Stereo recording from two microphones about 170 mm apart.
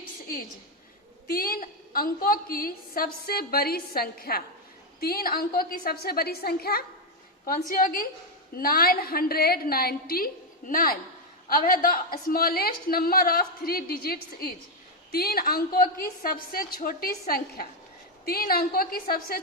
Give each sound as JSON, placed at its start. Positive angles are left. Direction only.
{"t": 1.3, "sound": "a woman's voice", "side_deg": 60}
{"t": 7.7, "sound": "a woman's voice", "side_deg": 55}